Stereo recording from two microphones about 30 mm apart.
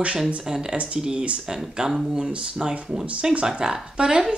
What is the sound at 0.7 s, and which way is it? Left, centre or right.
Speech, right.